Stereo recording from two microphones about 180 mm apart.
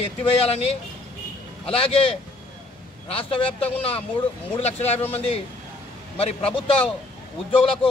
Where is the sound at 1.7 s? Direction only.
30° left (ahead or behind).